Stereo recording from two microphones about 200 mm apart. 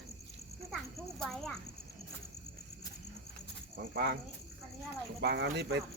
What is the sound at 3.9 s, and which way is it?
Speech, 55° right (ahead or behind).